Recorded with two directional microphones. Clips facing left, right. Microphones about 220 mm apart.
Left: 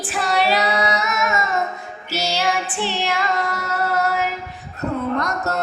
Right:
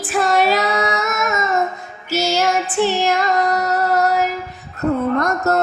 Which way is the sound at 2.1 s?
45° right (ahead or behind).